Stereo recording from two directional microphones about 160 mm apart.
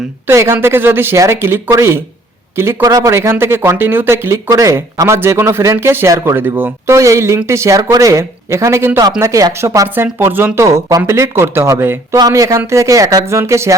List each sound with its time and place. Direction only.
0.3 s speech: 15° right (ahead or behind)